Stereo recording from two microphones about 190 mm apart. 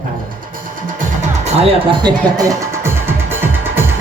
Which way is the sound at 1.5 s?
30° right (ahead or behind).